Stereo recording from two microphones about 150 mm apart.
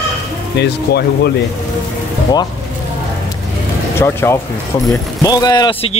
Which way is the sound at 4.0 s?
15° left (ahead or behind).